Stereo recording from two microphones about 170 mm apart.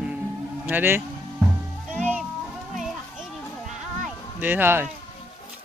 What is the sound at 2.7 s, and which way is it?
Children playing, centre (ahead or behind).